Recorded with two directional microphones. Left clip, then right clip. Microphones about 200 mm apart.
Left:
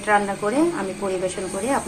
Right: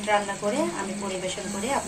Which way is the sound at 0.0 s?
Centre (ahead or behind).